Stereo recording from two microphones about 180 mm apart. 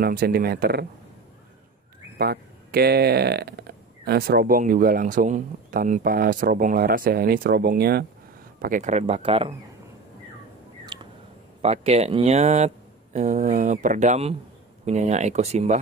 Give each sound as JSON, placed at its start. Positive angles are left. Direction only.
{"t": 0.0, "sound": "speech", "side_deg": -55}
{"t": 2.1, "sound": "speech", "side_deg": -60}
{"t": 10.9, "sound": "a sound", "side_deg": -25}
{"t": 11.6, "sound": "speech", "side_deg": -35}